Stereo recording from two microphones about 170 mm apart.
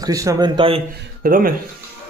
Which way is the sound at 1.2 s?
55° right (ahead or behind).